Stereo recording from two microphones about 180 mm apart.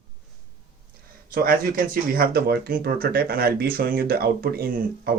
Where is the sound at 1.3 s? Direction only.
55° right (ahead or behind).